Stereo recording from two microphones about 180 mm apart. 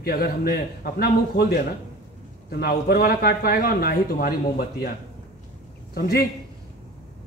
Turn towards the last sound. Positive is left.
turn(degrees=60)  # may be behind; listen again after turning